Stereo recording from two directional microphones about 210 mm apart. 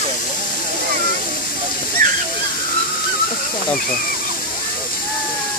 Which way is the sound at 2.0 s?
45° right (ahead or behind).